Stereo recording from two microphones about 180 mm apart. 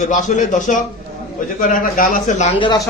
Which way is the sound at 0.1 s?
45° left (ahead or behind).